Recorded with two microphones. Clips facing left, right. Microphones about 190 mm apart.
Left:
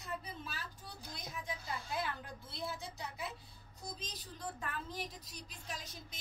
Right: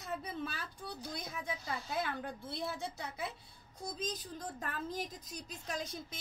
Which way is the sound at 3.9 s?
45° right (ahead or behind).